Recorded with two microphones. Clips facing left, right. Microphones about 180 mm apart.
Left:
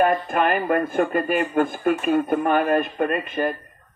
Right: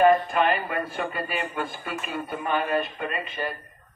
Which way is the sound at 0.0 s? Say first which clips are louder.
Even; 50° left (ahead or behind).